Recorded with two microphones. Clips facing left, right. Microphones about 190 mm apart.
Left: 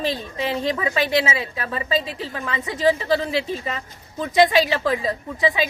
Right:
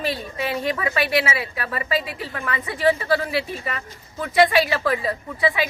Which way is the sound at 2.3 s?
20° left (ahead or behind).